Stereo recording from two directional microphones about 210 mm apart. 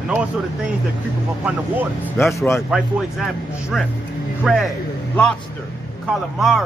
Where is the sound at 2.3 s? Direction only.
10° left (ahead or behind).